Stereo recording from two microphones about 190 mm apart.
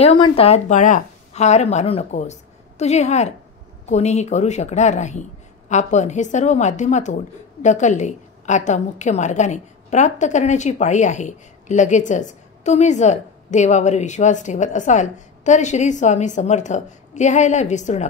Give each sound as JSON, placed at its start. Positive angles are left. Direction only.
{"t": 0.0, "sound": "a woman's voice", "side_deg": 30}